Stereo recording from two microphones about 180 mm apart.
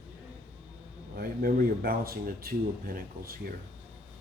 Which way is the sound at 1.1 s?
55° right (ahead or behind).